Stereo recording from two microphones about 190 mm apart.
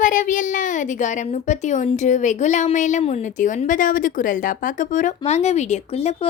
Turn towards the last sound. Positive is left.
turn(degrees=35)  # may be behind; listen again after turning